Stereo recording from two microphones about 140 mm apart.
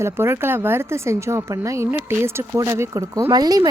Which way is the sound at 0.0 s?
15° right (ahead or behind).